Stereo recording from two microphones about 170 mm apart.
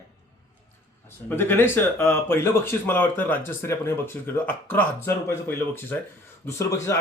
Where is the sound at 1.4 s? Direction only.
15° left (ahead or behind).